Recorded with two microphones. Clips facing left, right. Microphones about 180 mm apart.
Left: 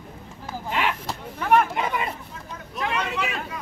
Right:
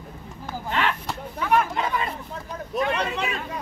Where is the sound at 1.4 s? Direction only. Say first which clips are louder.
Left 2 dB; 55° left (ahead or behind).